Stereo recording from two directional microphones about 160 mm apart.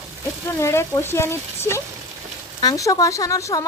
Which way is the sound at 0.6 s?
15° left (ahead or behind).